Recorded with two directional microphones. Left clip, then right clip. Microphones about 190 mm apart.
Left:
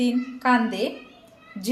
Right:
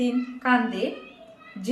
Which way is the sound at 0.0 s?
35° left (ahead or behind).